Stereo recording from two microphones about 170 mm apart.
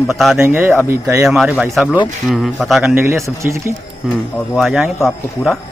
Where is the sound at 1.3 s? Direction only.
Centre (ahead or behind).